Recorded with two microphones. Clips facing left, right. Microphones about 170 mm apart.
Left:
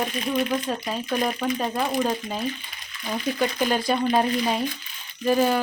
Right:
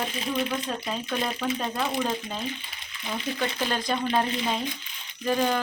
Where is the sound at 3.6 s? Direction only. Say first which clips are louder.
Left 5 dB; 10° left (ahead or behind).